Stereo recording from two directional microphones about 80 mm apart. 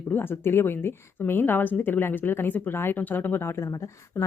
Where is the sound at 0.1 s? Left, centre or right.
Left.